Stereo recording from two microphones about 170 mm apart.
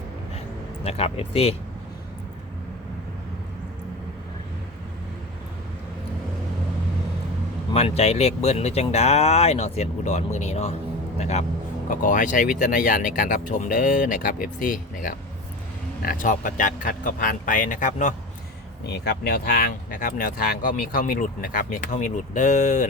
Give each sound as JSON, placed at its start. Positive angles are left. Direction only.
{"t": 0.9, "sound": "speech", "side_deg": 35}
{"t": 7.7, "sound": "speech", "side_deg": 35}
{"t": 18.9, "sound": "speech", "side_deg": 75}